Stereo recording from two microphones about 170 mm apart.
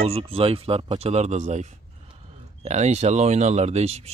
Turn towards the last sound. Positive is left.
turn(degrees=-40)  # may be behind; listen again after turning